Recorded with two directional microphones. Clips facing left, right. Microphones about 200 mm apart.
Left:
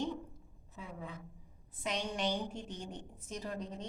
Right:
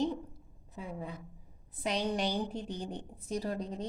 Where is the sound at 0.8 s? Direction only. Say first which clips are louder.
Right 5 dB; 35° right (ahead or behind).